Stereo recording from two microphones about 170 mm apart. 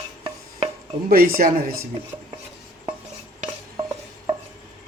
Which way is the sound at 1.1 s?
60° right (ahead or behind).